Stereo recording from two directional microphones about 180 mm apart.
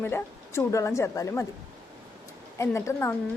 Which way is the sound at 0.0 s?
15° left (ahead or behind).